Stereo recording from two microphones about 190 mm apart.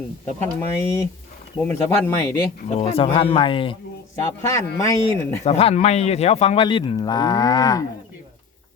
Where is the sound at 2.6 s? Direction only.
30° left (ahead or behind).